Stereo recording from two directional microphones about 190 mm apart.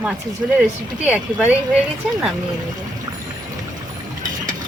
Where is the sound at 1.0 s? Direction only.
5° right (ahead or behind).